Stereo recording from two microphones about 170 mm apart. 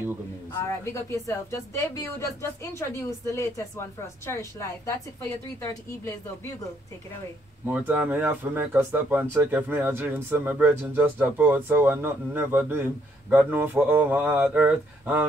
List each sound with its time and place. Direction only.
0.5 s speech: 15° left (ahead or behind)
7.6 s speech: 10° right (ahead or behind)